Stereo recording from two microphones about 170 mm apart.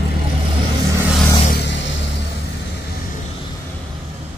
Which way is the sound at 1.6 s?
90° left.